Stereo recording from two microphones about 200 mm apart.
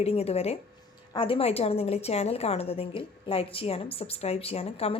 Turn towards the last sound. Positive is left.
turn(degrees=30)  # may be behind; listen again after turning